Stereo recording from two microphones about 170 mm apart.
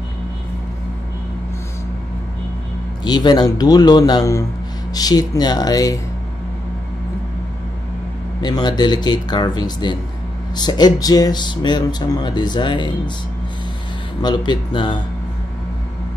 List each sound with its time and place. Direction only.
3.0 s speech: 25° left (ahead or behind)
8.4 s speech: 25° left (ahead or behind)
14.2 s speech: 25° left (ahead or behind)